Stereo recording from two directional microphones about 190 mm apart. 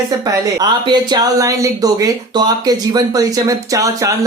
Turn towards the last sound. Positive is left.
turn(degrees=-15)  # may be behind; listen again after turning